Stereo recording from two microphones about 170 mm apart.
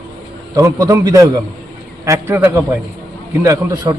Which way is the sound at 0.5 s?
20° right (ahead or behind).